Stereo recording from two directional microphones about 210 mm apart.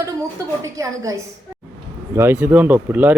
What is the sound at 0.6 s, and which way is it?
Speech, 15° right (ahead or behind).